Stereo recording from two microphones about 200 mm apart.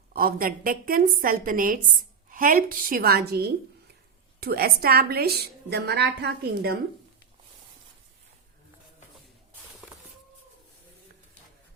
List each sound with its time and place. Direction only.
0.1 s a woman's voice: 50° right (ahead or behind)